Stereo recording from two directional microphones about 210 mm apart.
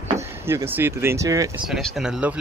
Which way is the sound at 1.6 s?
Centre (ahead or behind).